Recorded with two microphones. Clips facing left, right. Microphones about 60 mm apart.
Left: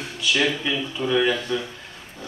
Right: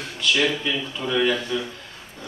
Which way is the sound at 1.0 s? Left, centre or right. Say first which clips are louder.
Left 1 dB; centre.